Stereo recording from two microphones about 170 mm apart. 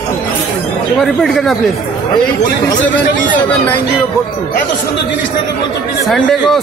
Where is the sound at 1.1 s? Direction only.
Centre (ahead or behind).